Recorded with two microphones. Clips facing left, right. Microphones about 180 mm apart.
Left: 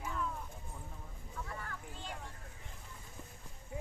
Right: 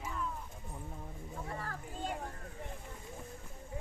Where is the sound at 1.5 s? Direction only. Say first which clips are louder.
Right 4 dB; 35° right (ahead or behind).